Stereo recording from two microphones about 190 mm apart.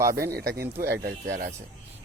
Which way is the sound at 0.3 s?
55° right (ahead or behind).